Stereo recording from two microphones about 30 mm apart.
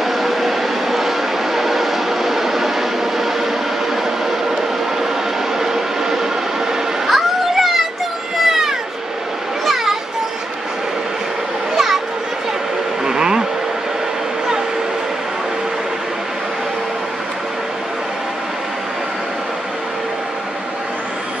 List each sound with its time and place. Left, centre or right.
0.0 s vehicle: centre
3.9 s a sound: centre
5.6 s vehicle: centre
7.1 s a sound: centre
11.7 s children playing: centre
13.0 s vehicle: right